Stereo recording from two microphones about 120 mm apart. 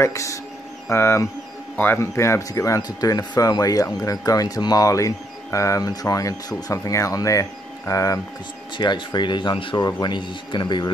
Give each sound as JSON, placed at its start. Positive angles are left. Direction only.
{"t": 0.0, "sound": "speech", "side_deg": 25}
{"t": 8.7, "sound": "speech", "side_deg": 40}